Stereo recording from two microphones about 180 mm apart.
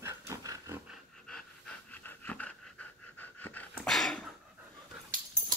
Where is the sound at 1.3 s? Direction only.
10° left (ahead or behind).